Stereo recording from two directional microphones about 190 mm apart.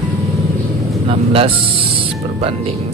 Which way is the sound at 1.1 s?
30° right (ahead or behind).